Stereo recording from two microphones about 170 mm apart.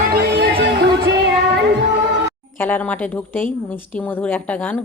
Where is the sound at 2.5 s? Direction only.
10° left (ahead or behind).